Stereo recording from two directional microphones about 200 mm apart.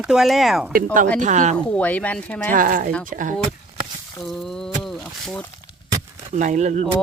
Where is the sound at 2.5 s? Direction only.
40° right (ahead or behind).